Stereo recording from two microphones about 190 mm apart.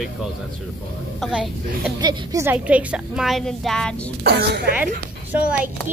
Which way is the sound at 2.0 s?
20° right (ahead or behind).